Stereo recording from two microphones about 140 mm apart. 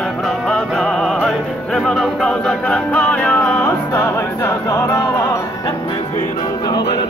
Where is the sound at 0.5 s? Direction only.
5° left (ahead or behind); by 5.4 s 20° left (ahead or behind).